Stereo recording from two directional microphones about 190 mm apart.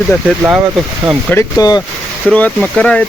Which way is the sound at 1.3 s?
15° left (ahead or behind).